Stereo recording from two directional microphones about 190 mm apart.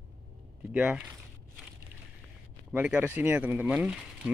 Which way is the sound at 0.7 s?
5° right (ahead or behind).